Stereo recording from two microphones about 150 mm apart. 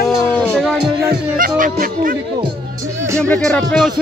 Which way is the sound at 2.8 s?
20° right (ahead or behind).